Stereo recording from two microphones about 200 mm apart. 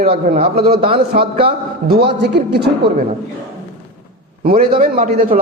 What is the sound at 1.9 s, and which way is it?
A man's voice, 55° right (ahead or behind).